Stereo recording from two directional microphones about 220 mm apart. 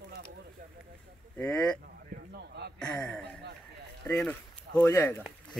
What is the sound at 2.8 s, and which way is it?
Speech, 5° left (ahead or behind).